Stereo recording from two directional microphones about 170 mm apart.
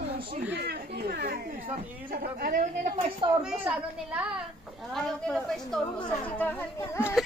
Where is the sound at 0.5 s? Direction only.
75° right (ahead or behind); by 2.7 s 55° right (ahead or behind).